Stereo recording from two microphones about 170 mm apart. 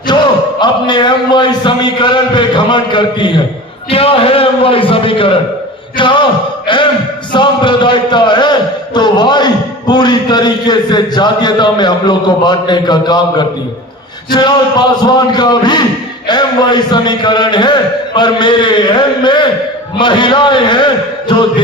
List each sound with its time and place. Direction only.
0.1 s a sound: 25° left (ahead or behind)
0.6 s a man's voice: 25° left (ahead or behind)
7.3 s a man's voice: 25° left (ahead or behind)